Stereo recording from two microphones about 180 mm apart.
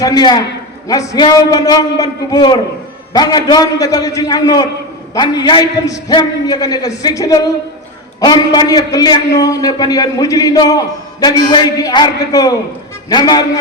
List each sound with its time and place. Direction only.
0.0 s a man's voice: 20° left (ahead or behind)